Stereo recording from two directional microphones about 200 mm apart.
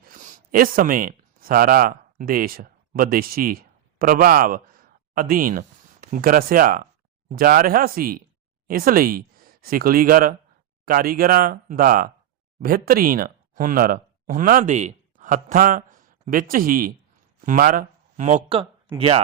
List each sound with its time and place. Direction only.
0.0 s speech: 40° right (ahead or behind)